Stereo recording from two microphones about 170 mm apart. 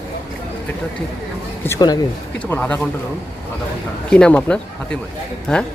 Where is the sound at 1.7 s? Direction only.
25° left (ahead or behind).